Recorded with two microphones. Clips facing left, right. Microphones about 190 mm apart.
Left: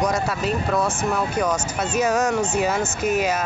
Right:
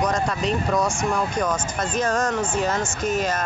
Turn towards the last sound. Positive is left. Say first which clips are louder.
# left 2 dB
turn(degrees=10)  # may be behind; listen again after turning